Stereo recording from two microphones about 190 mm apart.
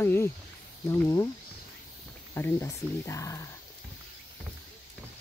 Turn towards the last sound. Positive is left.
turn(degrees=15)  # may be behind; listen again after turning